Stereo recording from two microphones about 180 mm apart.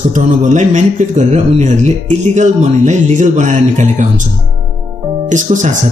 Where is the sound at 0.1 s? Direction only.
45° right (ahead or behind).